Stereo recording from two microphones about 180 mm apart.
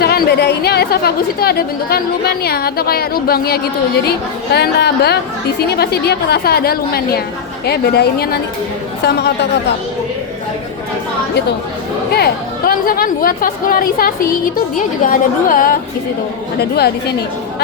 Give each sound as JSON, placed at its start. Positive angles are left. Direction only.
{"t": 0.0, "sound": "a woman's voice", "side_deg": 60}
{"t": 12.1, "sound": "speech", "side_deg": 55}
{"t": 16.6, "sound": "a woman's voice", "side_deg": 60}